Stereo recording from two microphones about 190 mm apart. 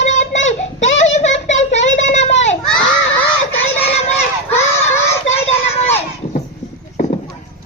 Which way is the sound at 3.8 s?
35° left (ahead or behind).